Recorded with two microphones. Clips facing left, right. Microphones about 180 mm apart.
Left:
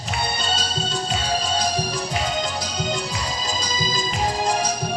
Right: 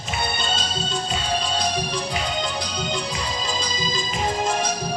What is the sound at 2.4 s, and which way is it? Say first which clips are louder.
Music: left 1 dB; 40° left (ahead or behind).